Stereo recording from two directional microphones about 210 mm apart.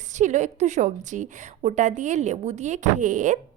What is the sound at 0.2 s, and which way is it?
A woman's voice, 35° right (ahead or behind).